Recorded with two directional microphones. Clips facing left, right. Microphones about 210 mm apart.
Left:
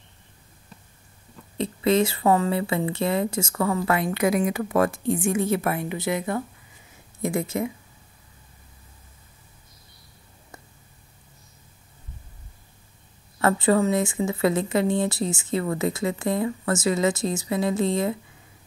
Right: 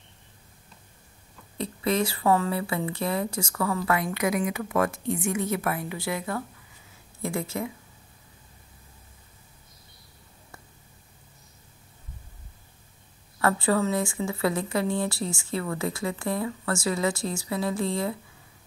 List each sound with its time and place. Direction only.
1.6 s a woman's voice: 25° left (ahead or behind)
13.4 s a woman's voice: 20° left (ahead or behind)